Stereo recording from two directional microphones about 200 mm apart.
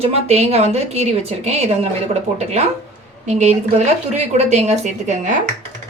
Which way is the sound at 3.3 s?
35° right (ahead or behind).